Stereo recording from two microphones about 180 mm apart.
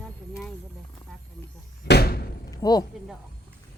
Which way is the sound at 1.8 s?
60° left (ahead or behind).